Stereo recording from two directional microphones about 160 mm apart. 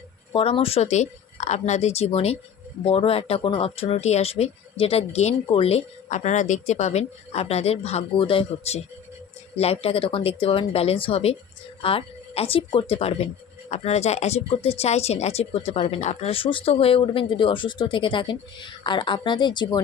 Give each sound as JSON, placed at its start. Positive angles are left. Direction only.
{"t": 0.3, "sound": "speech", "side_deg": 35}